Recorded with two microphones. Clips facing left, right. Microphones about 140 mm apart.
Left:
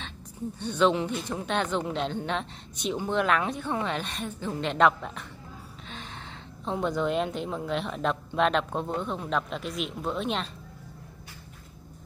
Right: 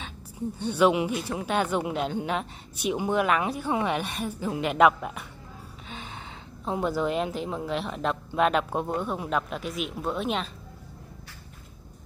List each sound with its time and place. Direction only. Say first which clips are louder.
0.7 s speech: right 2 dB; 10° right (ahead or behind)